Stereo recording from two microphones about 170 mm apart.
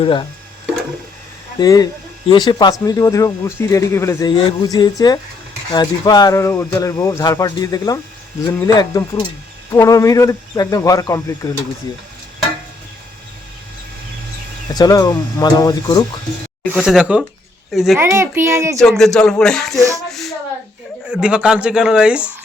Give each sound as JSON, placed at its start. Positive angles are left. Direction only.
{"t": 0.0, "sound": "speech", "side_deg": 30}
{"t": 1.6, "sound": "speech", "side_deg": 20}
{"t": 14.7, "sound": "speech", "side_deg": 20}
{"t": 16.7, "sound": "speech", "side_deg": -5}
{"t": 17.9, "sound": "a child's voice", "side_deg": -15}
{"t": 18.8, "sound": "speech", "side_deg": 0}